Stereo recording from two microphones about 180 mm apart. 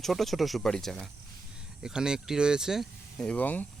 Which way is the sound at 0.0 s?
Centre (ahead or behind).